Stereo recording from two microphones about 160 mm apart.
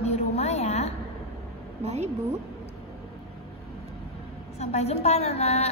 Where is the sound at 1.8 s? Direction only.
40° right (ahead or behind).